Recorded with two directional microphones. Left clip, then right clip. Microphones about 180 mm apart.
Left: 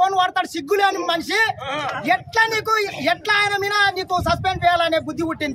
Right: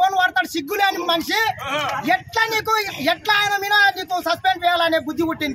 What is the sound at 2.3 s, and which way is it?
Speech, 30° left (ahead or behind).